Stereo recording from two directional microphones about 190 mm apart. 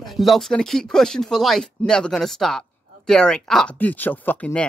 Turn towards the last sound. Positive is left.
turn(degrees=10)  # may be behind; listen again after turning